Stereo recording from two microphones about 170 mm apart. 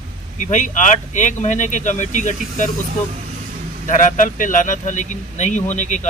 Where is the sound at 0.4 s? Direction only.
50° left (ahead or behind).